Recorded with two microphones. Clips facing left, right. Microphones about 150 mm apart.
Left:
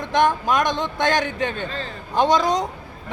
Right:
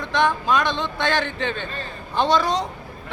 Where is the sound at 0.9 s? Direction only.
45° left (ahead or behind).